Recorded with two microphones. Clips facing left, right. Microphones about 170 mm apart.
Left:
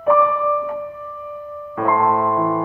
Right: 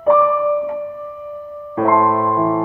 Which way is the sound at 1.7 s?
25° right (ahead or behind).